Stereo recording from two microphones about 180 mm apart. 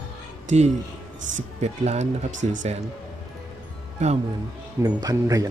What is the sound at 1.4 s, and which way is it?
Speech, 40° right (ahead or behind).